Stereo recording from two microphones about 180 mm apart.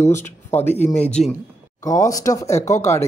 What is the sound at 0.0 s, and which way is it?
Speech, 15° left (ahead or behind).